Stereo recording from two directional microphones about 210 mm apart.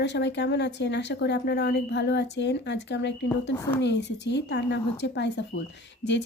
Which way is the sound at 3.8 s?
55° left (ahead or behind).